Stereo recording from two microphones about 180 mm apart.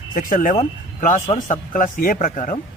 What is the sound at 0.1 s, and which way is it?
Speech, 50° left (ahead or behind).